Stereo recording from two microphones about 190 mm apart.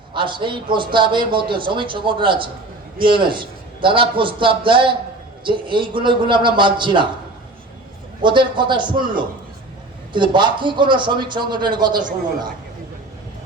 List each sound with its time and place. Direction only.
0.1 s a man's voice: 25° right (ahead or behind)
8.2 s a man's voice: 25° right (ahead or behind)